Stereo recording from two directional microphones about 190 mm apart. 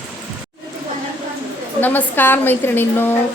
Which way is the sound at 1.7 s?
10° left (ahead or behind).